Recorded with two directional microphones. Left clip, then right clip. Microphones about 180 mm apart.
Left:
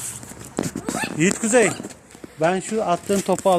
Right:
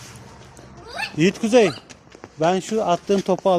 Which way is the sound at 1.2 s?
30° right (ahead or behind).